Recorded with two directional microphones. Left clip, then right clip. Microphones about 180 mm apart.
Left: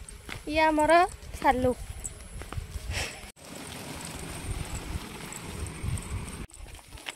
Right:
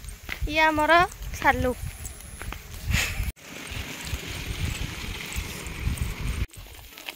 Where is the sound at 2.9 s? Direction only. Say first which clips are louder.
Right 7 dB; 20° left (ahead or behind).